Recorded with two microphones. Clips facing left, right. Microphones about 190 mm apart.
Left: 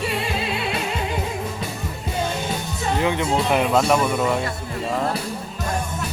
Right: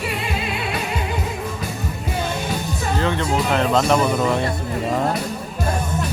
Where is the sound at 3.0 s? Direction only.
15° left (ahead or behind).